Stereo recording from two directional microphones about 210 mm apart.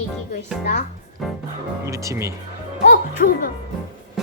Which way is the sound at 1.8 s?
15° right (ahead or behind).